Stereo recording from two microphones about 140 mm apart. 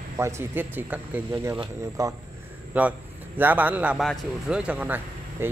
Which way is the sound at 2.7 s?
10° right (ahead or behind).